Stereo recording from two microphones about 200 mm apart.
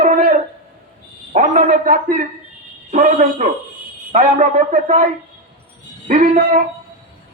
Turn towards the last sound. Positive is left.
turn(degrees=-40)  # may be behind; listen again after turning